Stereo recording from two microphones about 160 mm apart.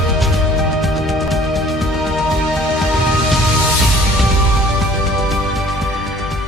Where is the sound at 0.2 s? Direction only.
Centre (ahead or behind).